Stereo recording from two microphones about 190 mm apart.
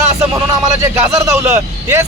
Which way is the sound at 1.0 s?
15° right (ahead or behind).